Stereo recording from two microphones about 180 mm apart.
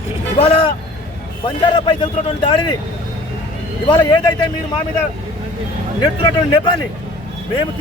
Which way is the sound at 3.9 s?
25° left (ahead or behind).